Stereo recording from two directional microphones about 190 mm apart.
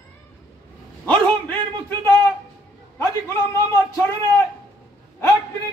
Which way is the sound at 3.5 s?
15° left (ahead or behind).